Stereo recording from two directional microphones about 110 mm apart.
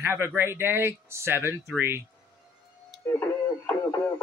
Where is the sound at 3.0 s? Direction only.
20° left (ahead or behind).